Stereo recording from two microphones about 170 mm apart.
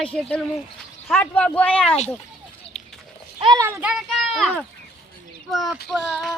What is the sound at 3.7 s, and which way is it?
Speech, 10° right (ahead or behind).